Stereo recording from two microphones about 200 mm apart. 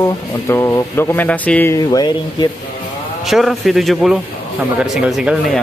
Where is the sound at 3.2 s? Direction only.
Centre (ahead or behind).